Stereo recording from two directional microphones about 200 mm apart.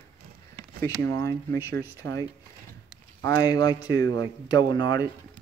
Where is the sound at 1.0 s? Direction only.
15° left (ahead or behind).